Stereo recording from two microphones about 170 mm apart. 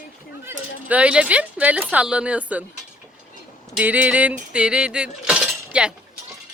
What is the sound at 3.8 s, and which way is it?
Speech, 10° right (ahead or behind).